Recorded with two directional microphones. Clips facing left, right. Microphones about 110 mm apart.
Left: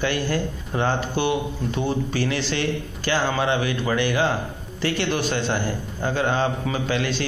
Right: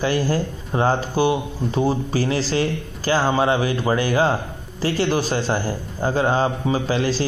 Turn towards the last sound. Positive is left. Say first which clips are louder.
# right 3 dB
turn(degrees=-35)  # may be behind; listen again after turning